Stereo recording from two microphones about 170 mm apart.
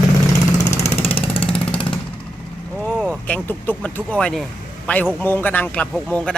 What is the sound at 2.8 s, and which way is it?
Vehicle, 5° left (ahead or behind).